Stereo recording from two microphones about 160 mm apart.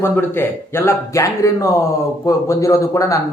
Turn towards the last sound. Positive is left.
turn(degrees=20)  # may be behind; listen again after turning